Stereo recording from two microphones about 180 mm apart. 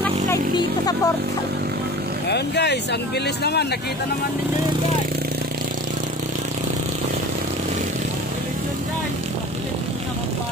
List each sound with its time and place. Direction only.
0.6 s speech: 20° left (ahead or behind)
2.2 s speech: 70° left (ahead or behind)